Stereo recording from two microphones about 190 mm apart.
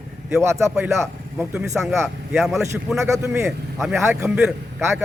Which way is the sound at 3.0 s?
15° right (ahead or behind).